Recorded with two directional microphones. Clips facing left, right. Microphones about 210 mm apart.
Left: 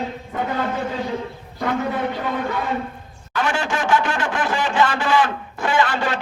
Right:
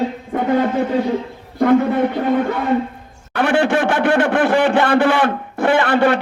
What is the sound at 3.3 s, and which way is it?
A man's voice, 60° right (ahead or behind).